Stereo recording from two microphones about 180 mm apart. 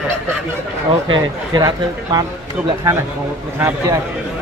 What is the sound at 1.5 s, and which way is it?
Speech, 20° right (ahead or behind).